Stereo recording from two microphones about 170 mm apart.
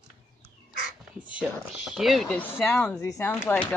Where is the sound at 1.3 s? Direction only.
5° right (ahead or behind).